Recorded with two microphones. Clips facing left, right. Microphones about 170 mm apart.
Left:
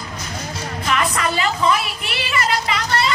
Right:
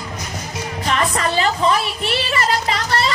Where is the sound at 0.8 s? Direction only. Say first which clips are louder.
Right 1 dB; 35° right (ahead or behind).